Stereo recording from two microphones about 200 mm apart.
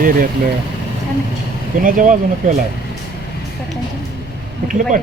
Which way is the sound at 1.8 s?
45° right (ahead or behind).